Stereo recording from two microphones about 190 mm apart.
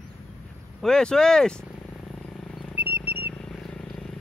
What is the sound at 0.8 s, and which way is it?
Speech, 5° left (ahead or behind).